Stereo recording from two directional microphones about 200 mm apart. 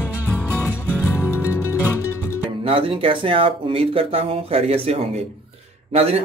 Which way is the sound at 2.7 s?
25° right (ahead or behind).